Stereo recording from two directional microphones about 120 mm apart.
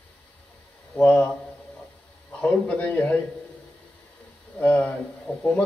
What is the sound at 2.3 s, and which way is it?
Speech, 15° left (ahead or behind).